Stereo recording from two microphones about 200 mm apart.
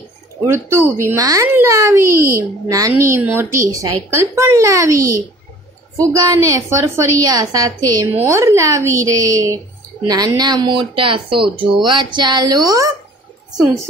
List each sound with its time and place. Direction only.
0.5 s a woman's voice: 10° right (ahead or behind)